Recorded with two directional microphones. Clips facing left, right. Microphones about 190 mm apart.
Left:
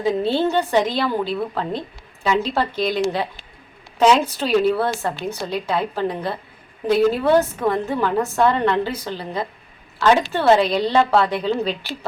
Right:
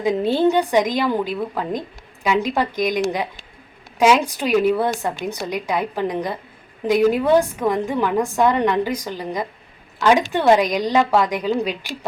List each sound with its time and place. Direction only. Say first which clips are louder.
0.0 s a woman's voice: right 2 dB; 15° right (ahead or behind)